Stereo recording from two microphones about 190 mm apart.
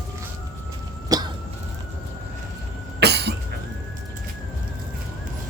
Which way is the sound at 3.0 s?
60° right (ahead or behind).